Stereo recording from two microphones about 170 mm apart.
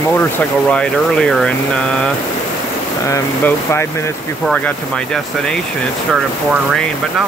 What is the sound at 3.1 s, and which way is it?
Speech, 15° left (ahead or behind).